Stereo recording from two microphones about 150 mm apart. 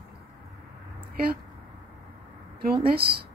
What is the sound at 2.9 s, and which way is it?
Speech, 90° right.